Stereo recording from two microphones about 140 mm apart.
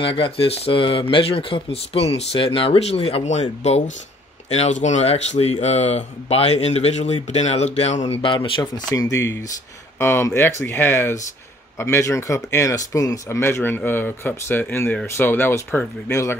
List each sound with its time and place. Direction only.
0.0 s speech: 40° left (ahead or behind)
8.2 s speech: 35° left (ahead or behind)
8.9 s speech: 20° left (ahead or behind)